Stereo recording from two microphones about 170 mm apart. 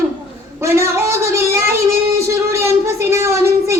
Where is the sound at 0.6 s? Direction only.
15° right (ahead or behind).